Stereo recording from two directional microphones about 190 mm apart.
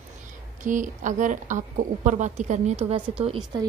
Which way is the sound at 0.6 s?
45° right (ahead or behind).